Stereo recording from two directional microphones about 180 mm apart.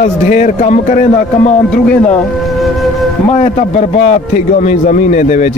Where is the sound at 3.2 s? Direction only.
40° left (ahead or behind).